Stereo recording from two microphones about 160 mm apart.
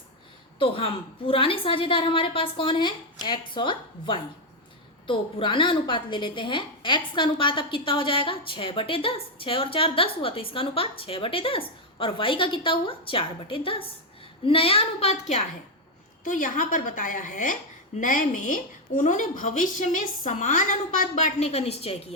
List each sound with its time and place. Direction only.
0.6 s a woman's voice: 35° left (ahead or behind)
16.2 s a woman's voice: 55° left (ahead or behind); by 22.1 s 40° left (ahead or behind)